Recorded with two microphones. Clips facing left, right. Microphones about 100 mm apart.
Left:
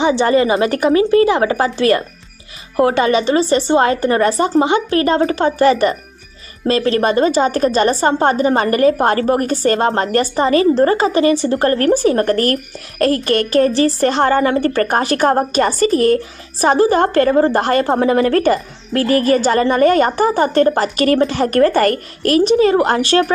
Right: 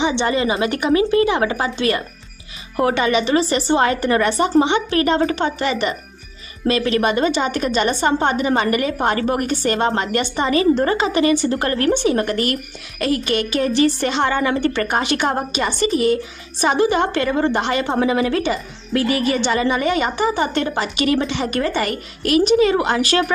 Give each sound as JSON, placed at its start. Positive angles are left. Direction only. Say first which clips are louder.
{"t": 0.0, "sound": "a woman's voice", "louder": "left 5 dB", "side_deg": 45}